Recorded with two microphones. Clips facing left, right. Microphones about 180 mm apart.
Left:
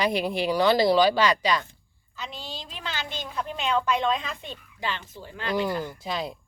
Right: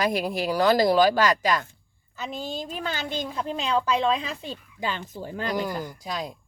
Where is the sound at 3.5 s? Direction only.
35° right (ahead or behind).